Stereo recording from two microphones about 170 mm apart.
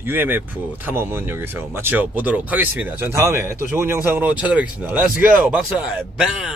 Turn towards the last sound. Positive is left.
turn(degrees=-5)  # may be behind; listen again after turning